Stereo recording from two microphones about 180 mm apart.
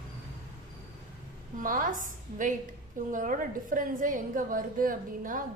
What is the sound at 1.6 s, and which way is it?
A woman's voice, 50° right (ahead or behind).